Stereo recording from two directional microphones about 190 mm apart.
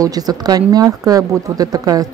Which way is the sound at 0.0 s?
20° right (ahead or behind).